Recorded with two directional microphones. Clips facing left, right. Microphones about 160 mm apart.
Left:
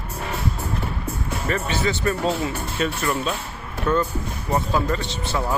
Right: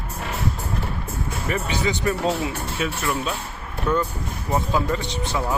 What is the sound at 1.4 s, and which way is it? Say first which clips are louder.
Speech: left 1 dB; 15° right (ahead or behind).